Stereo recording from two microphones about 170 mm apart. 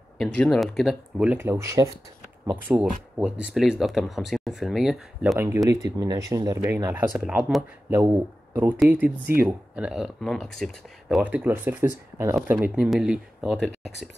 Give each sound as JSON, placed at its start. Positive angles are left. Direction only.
{"t": 0.2, "sound": "speech", "side_deg": 0}
{"t": 5.4, "sound": "speech", "side_deg": -20}
{"t": 7.2, "sound": "speech", "side_deg": -5}